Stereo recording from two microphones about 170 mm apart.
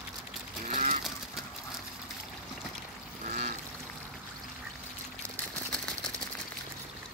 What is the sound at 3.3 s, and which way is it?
Duck, 40° right (ahead or behind).